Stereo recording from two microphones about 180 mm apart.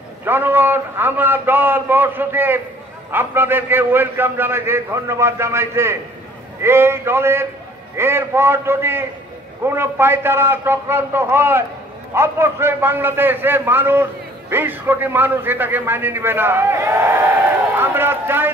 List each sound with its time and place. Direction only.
0.2 s a man's voice: 10° right (ahead or behind)